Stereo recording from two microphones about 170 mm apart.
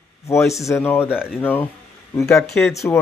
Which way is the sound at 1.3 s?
10° left (ahead or behind).